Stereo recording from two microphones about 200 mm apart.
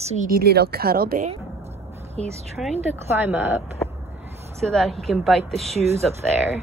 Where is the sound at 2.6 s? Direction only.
Centre (ahead or behind).